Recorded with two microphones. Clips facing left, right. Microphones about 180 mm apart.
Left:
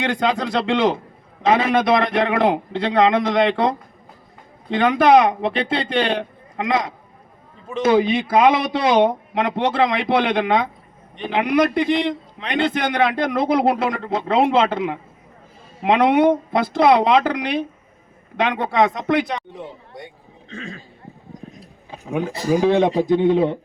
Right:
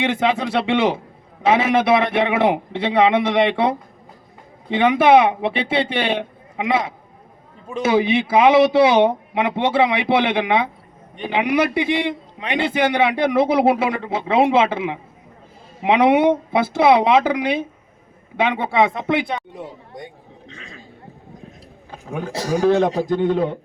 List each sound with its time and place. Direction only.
0.0 s a man's voice: 5° right (ahead or behind)
20.5 s speech: 45° left (ahead or behind)
21.8 s a sound: centre (ahead or behind)
22.3 s a man's voice: 90° right
22.6 s a man's voice: 5° left (ahead or behind)